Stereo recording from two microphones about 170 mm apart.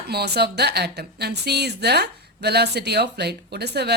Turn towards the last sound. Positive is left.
turn(degrees=-75)  # may be behind; listen again after turning